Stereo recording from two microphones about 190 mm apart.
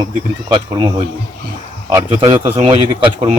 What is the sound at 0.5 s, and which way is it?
Speech, 25° right (ahead or behind).